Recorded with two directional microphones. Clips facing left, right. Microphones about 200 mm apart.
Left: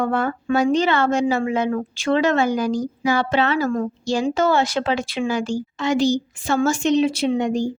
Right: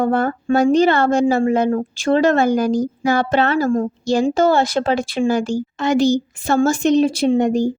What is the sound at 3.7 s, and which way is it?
Speech, 30° right (ahead or behind).